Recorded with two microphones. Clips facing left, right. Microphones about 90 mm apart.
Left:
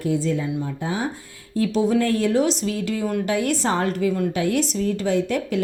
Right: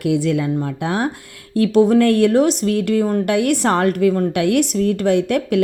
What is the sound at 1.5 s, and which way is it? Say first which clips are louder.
A woman's voice: right 7 dB; 60° right (ahead or behind).